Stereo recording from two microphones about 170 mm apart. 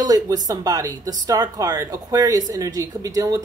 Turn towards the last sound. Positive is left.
turn(degrees=-20)  # may be behind; listen again after turning